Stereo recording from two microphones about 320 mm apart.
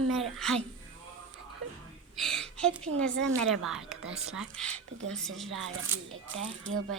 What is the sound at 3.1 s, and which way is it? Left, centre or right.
Speech, right.